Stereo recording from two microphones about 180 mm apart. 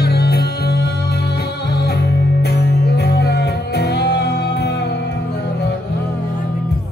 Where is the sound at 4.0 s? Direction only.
70° left (ahead or behind).